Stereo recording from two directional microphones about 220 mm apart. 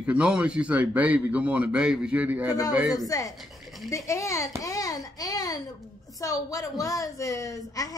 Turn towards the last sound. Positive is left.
turn(degrees=15)  # may be behind; listen again after turning